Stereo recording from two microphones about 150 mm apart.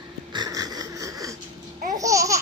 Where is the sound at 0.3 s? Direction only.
25° right (ahead or behind).